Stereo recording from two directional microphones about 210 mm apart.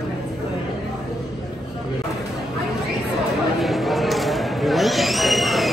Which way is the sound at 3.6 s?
Centre (ahead or behind).